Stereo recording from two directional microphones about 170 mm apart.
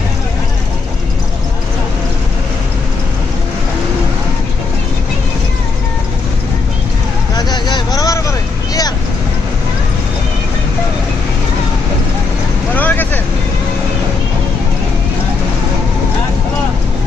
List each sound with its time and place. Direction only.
7.3 s vehicle: 25° left (ahead or behind)
12.7 s vehicle: 10° left (ahead or behind)